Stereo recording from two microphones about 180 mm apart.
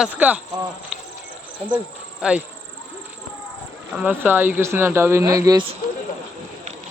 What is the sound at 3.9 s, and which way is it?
Speech, 10° right (ahead or behind).